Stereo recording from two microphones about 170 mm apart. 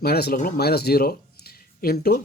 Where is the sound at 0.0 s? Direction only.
65° left (ahead or behind).